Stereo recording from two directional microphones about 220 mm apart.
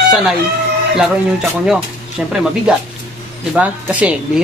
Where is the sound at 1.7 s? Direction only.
5° right (ahead or behind).